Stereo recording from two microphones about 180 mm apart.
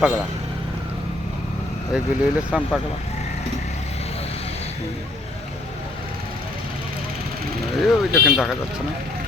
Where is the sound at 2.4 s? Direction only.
5° right (ahead or behind).